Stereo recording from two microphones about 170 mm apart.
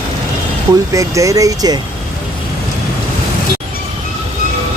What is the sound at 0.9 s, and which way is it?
Speech, 20° right (ahead or behind).